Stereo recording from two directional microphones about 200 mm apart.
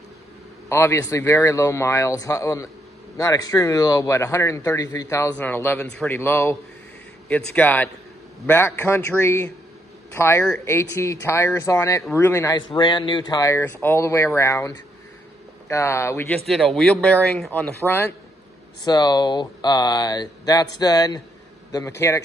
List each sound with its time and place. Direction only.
0.7 s speech: 15° left (ahead or behind)
15.7 s speech: 15° left (ahead or behind)
16.4 s speech: centre (ahead or behind)
18.9 s speech: 20° left (ahead or behind)